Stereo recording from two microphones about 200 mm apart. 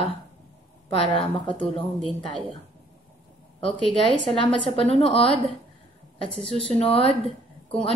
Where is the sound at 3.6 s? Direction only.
25° left (ahead or behind).